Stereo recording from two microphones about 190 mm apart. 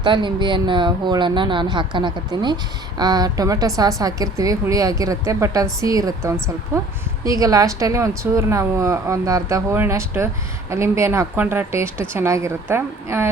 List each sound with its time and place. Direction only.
0.0 s a woman's voice: 25° right (ahead or behind)